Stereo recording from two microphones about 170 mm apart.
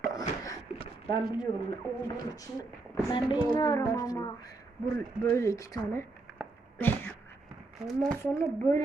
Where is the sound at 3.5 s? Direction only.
20° left (ahead or behind).